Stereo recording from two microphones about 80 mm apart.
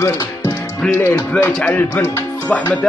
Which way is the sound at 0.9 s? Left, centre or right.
Left.